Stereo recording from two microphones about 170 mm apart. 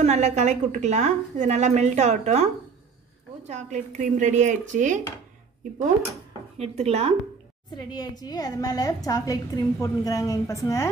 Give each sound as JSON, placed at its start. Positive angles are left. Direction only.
{"t": 0.0, "sound": "a woman's voice", "side_deg": -40}
{"t": 3.4, "sound": "speech", "side_deg": -45}
{"t": 6.6, "sound": "a woman's voice", "side_deg": -40}
{"t": 7.7, "sound": "a woman's voice", "side_deg": 25}